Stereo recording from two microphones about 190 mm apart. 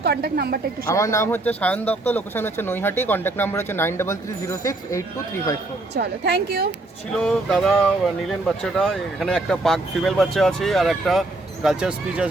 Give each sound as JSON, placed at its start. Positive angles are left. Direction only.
{"t": 0.0, "sound": "a woman's voice", "side_deg": -60}
{"t": 0.9, "sound": "speech", "side_deg": 15}
{"t": 5.9, "sound": "a woman's voice", "side_deg": -55}
{"t": 7.1, "sound": "speech", "side_deg": 5}